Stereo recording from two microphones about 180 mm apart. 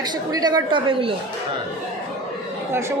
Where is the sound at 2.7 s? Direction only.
15° right (ahead or behind).